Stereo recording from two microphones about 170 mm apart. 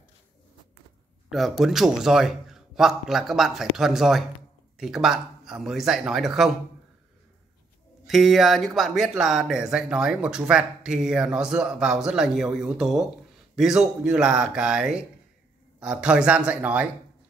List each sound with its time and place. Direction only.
1.3 s speech: centre (ahead or behind)
8.1 s speech: centre (ahead or behind)